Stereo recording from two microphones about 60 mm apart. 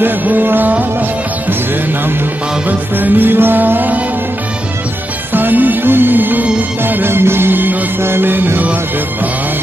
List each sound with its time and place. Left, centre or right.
0.0 s music: right
2.7 s music: right
5.3 s music: right